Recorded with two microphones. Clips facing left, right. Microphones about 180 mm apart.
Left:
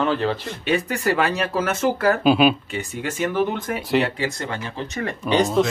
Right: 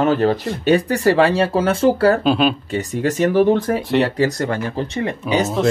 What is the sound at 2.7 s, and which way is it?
Speech, 40° right (ahead or behind).